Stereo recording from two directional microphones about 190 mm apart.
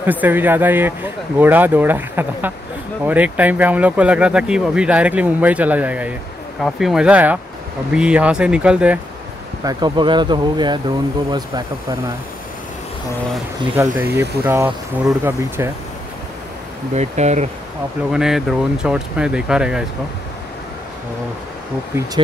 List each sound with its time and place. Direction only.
0.0 s speech: 10° right (ahead or behind)
9.7 s speech: 25° right (ahead or behind)
13.7 s speech: 10° right (ahead or behind)
16.9 s speech: 35° right (ahead or behind)
18.1 s speech: 5° right (ahead or behind)
21.9 s speech: 10° right (ahead or behind)